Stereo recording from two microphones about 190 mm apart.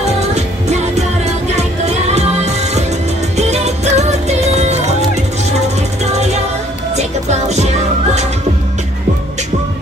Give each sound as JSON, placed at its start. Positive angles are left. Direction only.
{"t": 0.0, "sound": "music", "side_deg": -35}
{"t": 7.0, "sound": "music", "side_deg": -35}